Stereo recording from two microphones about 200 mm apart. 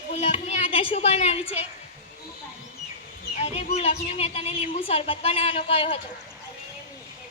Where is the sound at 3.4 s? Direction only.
30° left (ahead or behind).